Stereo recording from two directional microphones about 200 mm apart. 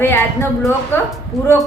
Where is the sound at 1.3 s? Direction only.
Centre (ahead or behind).